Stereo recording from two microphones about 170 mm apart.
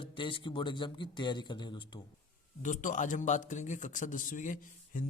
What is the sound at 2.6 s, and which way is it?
A man's voice, 45° left (ahead or behind).